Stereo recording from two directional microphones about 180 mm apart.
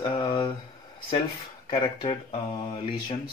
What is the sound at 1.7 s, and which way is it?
Speech, 25° left (ahead or behind).